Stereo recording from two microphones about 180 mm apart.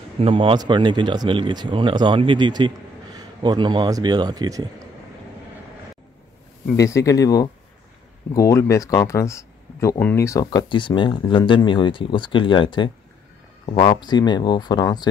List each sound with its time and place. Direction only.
0.2 s speech: 30° right (ahead or behind)
6.8 s speech: 20° left (ahead or behind)